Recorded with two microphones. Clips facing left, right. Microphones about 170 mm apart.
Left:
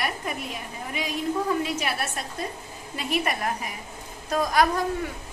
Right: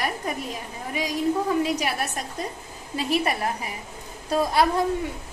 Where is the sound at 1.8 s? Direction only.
35° right (ahead or behind).